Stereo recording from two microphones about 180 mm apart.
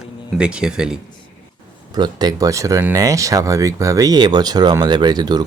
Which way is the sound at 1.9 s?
25° right (ahead or behind).